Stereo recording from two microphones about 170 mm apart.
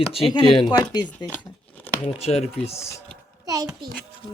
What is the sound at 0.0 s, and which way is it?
Speech, 35° left (ahead or behind).